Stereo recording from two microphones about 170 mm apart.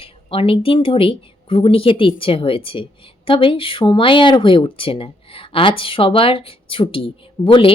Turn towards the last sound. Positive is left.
turn(degrees=30)  # may be behind; listen again after turning